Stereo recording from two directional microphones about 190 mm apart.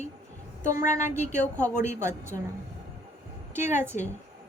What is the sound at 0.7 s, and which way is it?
Speech, 15° right (ahead or behind).